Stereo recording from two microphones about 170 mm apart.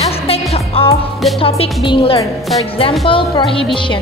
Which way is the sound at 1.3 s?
35° left (ahead or behind).